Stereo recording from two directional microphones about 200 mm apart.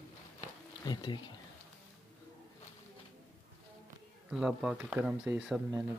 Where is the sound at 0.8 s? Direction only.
20° left (ahead or behind).